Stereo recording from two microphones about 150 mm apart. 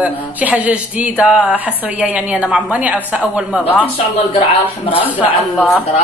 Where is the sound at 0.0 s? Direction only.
10° right (ahead or behind).